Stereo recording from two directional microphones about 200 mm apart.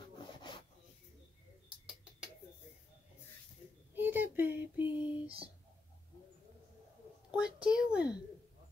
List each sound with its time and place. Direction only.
0.5 s rub: 20° left (ahead or behind)
3.9 s child singing: 10° right (ahead or behind)
7.2 s a sound: 5° right (ahead or behind)